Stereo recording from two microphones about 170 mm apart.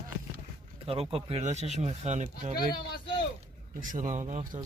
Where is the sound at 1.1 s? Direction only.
35° right (ahead or behind).